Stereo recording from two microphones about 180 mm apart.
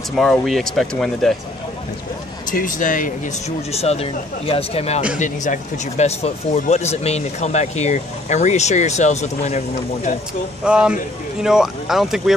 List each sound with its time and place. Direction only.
0.2 s speech: centre (ahead or behind)
2.5 s speech: 50° left (ahead or behind)
10.6 s speech: 5° right (ahead or behind)